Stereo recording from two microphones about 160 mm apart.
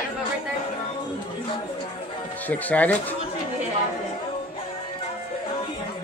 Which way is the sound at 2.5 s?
10° left (ahead or behind).